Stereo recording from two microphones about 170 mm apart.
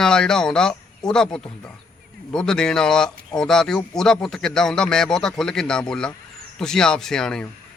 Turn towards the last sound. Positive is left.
turn(degrees=5)  # may be behind; listen again after turning